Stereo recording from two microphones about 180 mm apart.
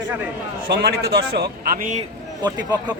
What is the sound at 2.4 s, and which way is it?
Speech, 25° right (ahead or behind).